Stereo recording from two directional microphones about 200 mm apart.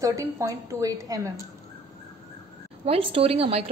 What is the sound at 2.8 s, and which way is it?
Speech, 30° right (ahead or behind).